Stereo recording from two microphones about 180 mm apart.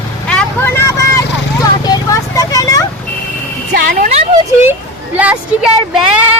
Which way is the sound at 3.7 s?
50° right (ahead or behind).